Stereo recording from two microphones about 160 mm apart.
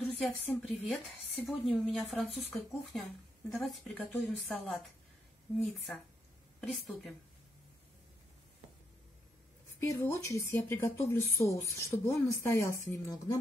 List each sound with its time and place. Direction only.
0.0 s a woman's voice: 5° left (ahead or behind)
6.6 s speech: centre (ahead or behind)
9.8 s a woman's voice: 15° left (ahead or behind)